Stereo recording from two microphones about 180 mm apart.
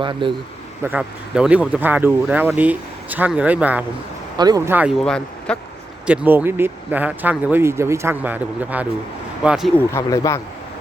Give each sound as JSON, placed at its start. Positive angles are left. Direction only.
{"t": 0.0, "sound": "speech", "side_deg": -25}
{"t": 0.9, "sound": "speech", "side_deg": -5}
{"t": 4.4, "sound": "speech", "side_deg": -20}
{"t": 6.1, "sound": "speech", "side_deg": -10}
{"t": 9.7, "sound": "speech", "side_deg": 15}